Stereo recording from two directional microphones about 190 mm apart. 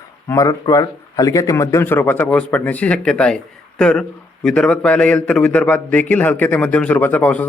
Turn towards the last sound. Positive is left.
turn(degrees=10)  # may be behind; listen again after turning